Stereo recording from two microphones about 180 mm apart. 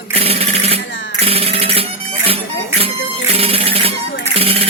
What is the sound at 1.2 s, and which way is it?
Music, 35° right (ahead or behind).